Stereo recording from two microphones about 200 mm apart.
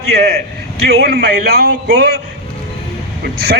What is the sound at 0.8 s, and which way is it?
A man's voice, 55° right (ahead or behind).